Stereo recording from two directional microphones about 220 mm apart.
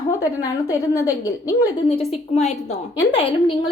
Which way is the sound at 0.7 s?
15° left (ahead or behind).